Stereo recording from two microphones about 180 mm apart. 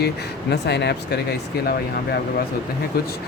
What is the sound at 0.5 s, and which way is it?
Speech, 70° left (ahead or behind).